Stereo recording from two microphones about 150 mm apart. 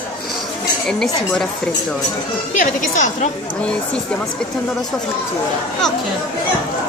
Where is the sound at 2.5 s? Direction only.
60° left (ahead or behind).